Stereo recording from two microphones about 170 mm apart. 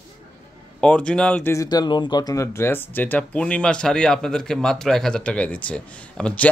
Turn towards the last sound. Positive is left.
turn(degrees=5)  # may be behind; listen again after turning